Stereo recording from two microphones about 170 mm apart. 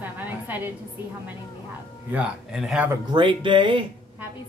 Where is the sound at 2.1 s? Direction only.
5° right (ahead or behind).